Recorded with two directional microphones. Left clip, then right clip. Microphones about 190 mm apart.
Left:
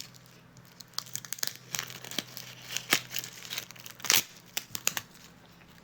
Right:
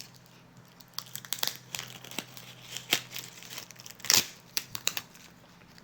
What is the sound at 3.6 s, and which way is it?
Crumpling, 15° left (ahead or behind).